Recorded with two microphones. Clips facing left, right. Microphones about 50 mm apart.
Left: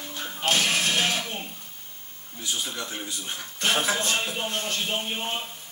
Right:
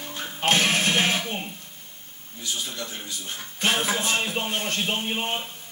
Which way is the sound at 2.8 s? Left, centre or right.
Centre.